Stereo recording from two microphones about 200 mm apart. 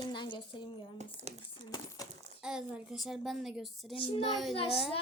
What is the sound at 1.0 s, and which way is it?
Speech, 35° right (ahead or behind).